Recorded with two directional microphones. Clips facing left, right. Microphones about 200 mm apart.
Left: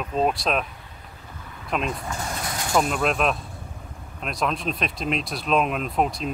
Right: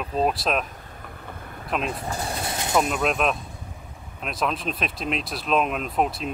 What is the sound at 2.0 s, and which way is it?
Vehicle, 30° right (ahead or behind).